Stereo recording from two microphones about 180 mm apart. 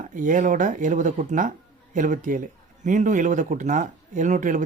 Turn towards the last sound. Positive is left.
turn(degrees=-45)  # may be behind; listen again after turning